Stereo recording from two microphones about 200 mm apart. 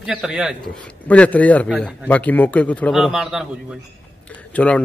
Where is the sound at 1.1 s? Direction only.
5° left (ahead or behind).